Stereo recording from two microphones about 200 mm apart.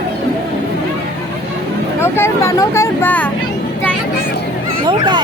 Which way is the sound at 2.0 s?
15° left (ahead or behind).